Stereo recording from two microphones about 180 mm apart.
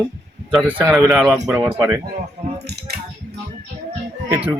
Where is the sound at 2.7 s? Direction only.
65° right (ahead or behind).